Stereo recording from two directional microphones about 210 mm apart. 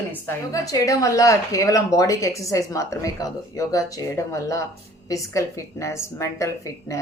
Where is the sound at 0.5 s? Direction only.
15° left (ahead or behind).